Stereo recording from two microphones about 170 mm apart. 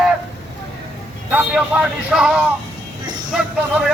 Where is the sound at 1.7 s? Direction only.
10° right (ahead or behind).